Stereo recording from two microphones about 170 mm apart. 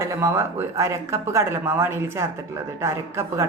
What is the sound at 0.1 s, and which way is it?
A woman's voice, 15° right (ahead or behind).